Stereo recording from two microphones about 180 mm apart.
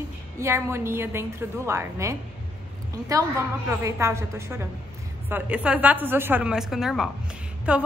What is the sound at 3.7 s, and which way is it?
A woman's voice, 15° right (ahead or behind).